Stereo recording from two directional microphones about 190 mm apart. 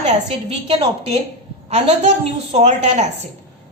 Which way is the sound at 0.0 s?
30° right (ahead or behind).